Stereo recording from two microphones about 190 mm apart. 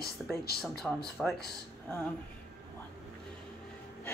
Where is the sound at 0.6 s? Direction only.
Centre (ahead or behind).